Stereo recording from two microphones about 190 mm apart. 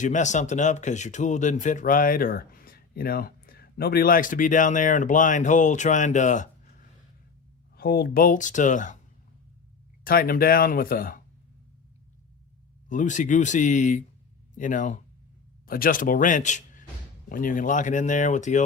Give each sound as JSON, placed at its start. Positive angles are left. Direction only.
{"t": 0.0, "sound": "speech", "side_deg": 40}
{"t": 7.8, "sound": "speech", "side_deg": 55}
{"t": 10.0, "sound": "speech", "side_deg": 50}
{"t": 12.9, "sound": "speech", "side_deg": 40}